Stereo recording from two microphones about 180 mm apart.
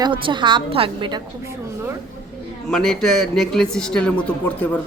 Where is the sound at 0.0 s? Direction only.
25° right (ahead or behind).